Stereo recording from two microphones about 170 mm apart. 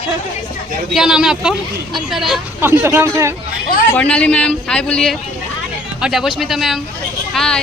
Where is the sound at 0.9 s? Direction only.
5° right (ahead or behind).